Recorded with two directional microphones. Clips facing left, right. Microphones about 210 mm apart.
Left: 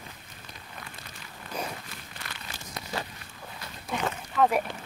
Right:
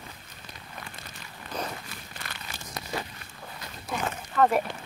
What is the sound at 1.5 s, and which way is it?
Walk, 10° left (ahead or behind).